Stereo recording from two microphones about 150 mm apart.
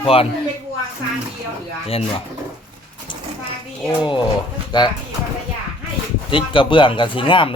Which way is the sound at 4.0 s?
30° left (ahead or behind).